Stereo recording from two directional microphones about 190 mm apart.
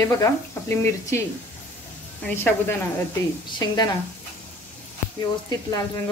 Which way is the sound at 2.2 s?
10° left (ahead or behind).